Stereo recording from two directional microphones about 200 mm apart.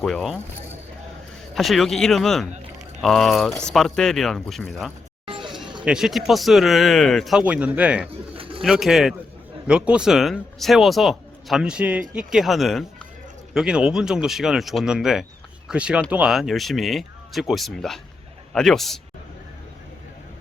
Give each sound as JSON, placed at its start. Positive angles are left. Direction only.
{"t": 0.0, "sound": "speech", "side_deg": 0}
{"t": 1.5, "sound": "speech", "side_deg": 0}
{"t": 5.2, "sound": "a sound", "side_deg": -25}
{"t": 5.8, "sound": "speech", "side_deg": -5}